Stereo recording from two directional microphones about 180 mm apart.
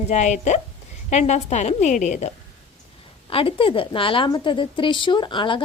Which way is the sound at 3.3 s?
30° left (ahead or behind).